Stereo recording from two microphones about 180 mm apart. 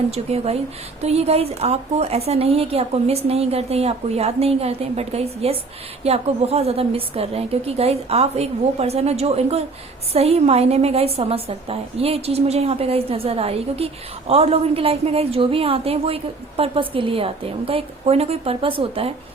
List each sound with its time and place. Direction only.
0.1 s a woman's voice: 35° right (ahead or behind)